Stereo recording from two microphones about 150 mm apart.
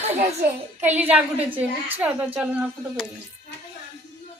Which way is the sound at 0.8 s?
10° right (ahead or behind).